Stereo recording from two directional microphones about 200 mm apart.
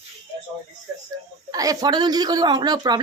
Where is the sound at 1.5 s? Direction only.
20° right (ahead or behind).